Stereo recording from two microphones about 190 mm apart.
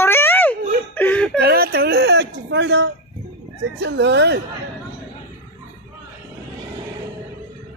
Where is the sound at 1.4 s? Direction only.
55° right (ahead or behind); by 2.9 s 70° right (ahead or behind).